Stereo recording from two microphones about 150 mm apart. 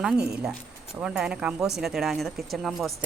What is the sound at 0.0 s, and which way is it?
Speech, 5° right (ahead or behind).